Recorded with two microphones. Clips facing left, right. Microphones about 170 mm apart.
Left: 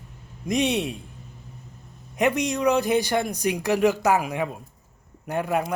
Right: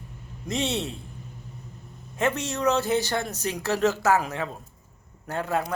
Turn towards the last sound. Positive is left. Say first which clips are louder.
# left 3 dB
turn(degrees=15)  # may be behind; listen again after turning